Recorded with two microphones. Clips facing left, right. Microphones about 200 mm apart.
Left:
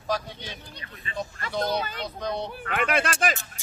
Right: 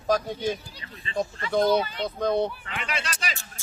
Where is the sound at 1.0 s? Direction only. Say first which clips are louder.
Right 5 dB; 30° right (ahead or behind).